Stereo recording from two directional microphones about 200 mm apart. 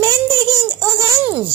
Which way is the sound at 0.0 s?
15° right (ahead or behind).